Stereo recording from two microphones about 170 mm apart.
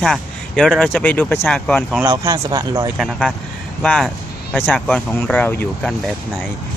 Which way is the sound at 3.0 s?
Centre (ahead or behind).